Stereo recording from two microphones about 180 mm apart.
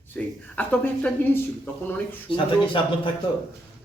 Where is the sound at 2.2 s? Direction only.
25° left (ahead or behind).